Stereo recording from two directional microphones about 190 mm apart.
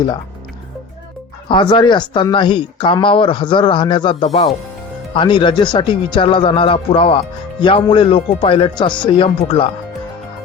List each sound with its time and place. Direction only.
1.5 s speech: 25° left (ahead or behind)